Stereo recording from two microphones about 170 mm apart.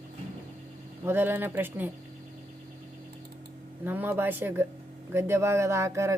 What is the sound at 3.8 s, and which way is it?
Speech, 10° right (ahead or behind).